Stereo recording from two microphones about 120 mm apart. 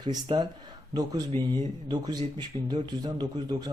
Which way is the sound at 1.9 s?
35° right (ahead or behind).